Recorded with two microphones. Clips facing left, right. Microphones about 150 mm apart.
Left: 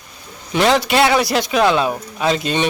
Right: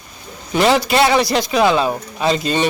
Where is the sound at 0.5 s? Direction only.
Centre (ahead or behind).